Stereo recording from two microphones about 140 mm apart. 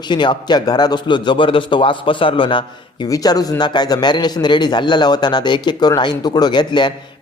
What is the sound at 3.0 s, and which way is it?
Speech, 25° left (ahead or behind).